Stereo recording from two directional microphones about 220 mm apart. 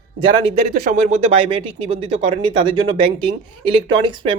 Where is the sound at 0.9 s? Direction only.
30° right (ahead or behind).